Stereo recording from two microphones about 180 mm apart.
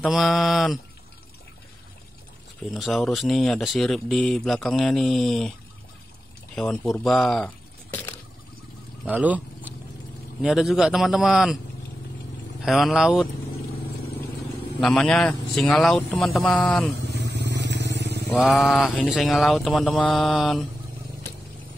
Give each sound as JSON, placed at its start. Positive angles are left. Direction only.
{"t": 0.0, "sound": "speech", "side_deg": 0}
{"t": 2.7, "sound": "speech", "side_deg": 0}
{"t": 6.5, "sound": "speech", "side_deg": 5}
{"t": 9.0, "sound": "a sound", "side_deg": -10}
{"t": 10.4, "sound": "speech", "side_deg": 0}
{"t": 12.6, "sound": "speech", "side_deg": 0}
{"t": 14.8, "sound": "speech", "side_deg": 5}
{"t": 17.2, "sound": "vehicle", "side_deg": -70}
{"t": 18.4, "sound": "speech", "side_deg": 0}